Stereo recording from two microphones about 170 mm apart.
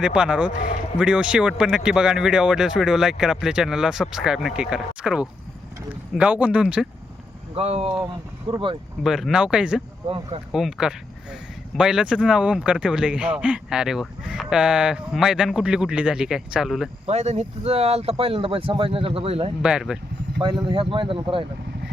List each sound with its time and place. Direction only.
0.0 s speech: 5° right (ahead or behind)
7.5 s speech: 35° right (ahead or behind)
8.0 s speech: 25° right (ahead or behind)
9.0 s speech: 5° right (ahead or behind)
10.1 s speech: 35° right (ahead or behind)
10.5 s speech: 5° right (ahead or behind)
17.1 s speech: 40° right (ahead or behind)
19.6 s speech: 5° right (ahead or behind)
20.4 s speech: 30° right (ahead or behind)